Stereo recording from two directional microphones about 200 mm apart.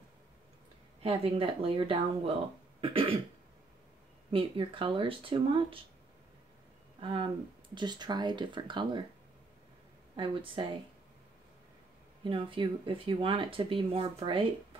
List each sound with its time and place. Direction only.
1.0 s speech: 30° right (ahead or behind)
4.3 s speech: 25° right (ahead or behind)
7.0 s speech: 25° right (ahead or behind)
10.1 s speech: 25° right (ahead or behind)
12.3 s speech: 25° right (ahead or behind)